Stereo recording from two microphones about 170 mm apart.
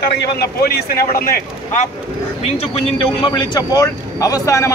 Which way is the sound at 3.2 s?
25° left (ahead or behind).